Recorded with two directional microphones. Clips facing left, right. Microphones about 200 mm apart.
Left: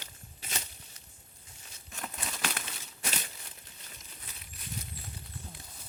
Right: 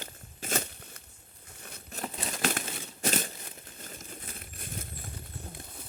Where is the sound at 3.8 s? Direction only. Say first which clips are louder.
Right 12 dB; 50° right (ahead or behind).